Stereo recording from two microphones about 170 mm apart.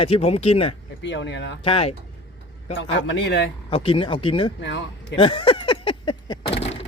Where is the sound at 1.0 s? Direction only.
90° left.